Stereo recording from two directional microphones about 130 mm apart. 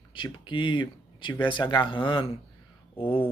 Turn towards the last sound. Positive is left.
turn(degrees=45)  # may be behind; listen again after turning